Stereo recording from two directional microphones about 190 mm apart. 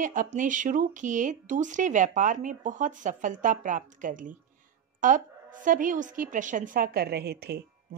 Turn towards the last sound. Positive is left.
turn(degrees=-55)  # may be behind; listen again after turning